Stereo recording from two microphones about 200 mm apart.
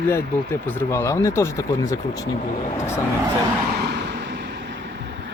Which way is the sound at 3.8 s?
55° right (ahead or behind).